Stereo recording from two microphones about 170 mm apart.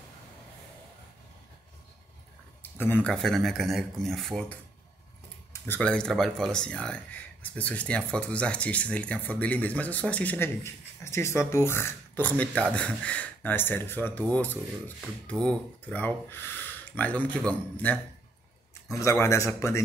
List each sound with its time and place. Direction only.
2.6 s speech: 10° left (ahead or behind)